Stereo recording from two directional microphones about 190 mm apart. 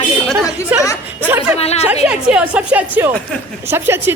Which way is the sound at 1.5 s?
35° left (ahead or behind).